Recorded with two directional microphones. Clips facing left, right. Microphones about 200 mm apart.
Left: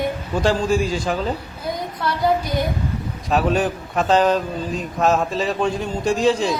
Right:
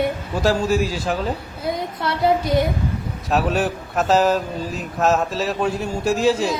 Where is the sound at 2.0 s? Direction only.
25° right (ahead or behind).